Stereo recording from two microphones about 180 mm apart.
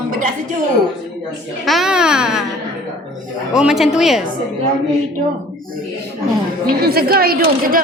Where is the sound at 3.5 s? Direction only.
5° right (ahead or behind).